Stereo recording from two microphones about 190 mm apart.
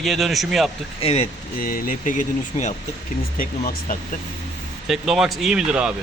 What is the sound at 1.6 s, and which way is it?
Speech, 45° left (ahead or behind).